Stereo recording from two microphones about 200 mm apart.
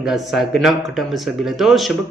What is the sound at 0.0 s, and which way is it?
Speech, centre (ahead or behind).